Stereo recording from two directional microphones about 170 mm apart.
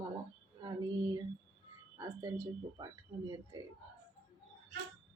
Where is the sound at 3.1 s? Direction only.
35° right (ahead or behind).